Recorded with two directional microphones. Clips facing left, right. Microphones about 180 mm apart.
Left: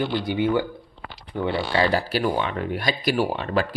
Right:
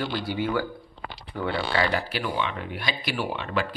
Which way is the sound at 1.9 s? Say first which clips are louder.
Left 6 dB; 35° left (ahead or behind).